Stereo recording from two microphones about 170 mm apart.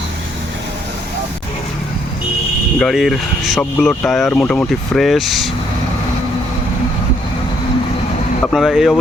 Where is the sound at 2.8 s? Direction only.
Centre (ahead or behind).